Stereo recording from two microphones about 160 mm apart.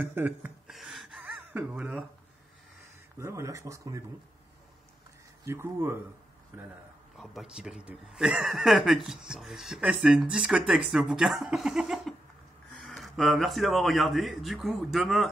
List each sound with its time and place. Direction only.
0.0 s gasp: 10° right (ahead or behind)
3.2 s speech: 20° right (ahead or behind)
5.4 s speech: 15° right (ahead or behind); by 15.2 s centre (ahead or behind)